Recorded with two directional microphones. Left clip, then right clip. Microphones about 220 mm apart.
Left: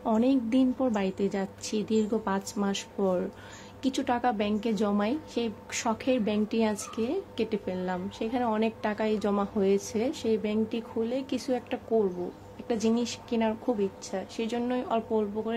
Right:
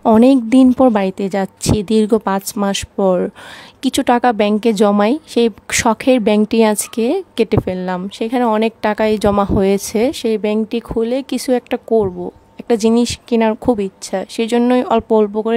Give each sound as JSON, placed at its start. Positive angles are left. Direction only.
{"t": 0.0, "sound": "a woman's voice", "side_deg": -50}